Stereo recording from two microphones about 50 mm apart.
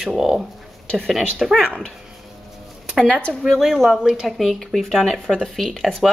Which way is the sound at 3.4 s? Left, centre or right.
Centre.